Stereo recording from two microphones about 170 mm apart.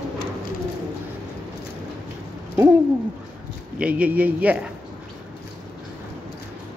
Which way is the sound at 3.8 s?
10° right (ahead or behind).